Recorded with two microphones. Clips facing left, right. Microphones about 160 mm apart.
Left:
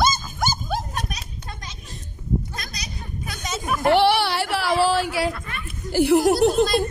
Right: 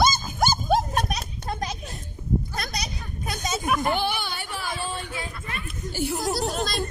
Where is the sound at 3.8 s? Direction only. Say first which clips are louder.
Left 8 dB; 75° left (ahead or behind).